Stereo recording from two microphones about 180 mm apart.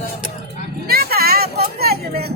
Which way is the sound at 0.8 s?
60° right (ahead or behind).